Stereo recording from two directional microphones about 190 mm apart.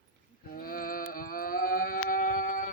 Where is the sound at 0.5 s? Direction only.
50° left (ahead or behind).